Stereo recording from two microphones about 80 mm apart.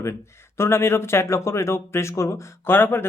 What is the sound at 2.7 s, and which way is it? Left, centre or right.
Speech, left.